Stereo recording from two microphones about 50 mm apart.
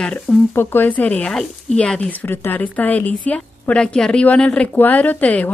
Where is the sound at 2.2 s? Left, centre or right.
Left.